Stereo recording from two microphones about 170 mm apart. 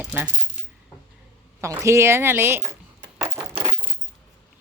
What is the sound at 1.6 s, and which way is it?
Speech, 15° right (ahead or behind).